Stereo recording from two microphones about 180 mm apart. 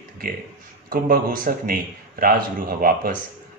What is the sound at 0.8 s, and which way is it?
A man's voice, 55° right (ahead or behind).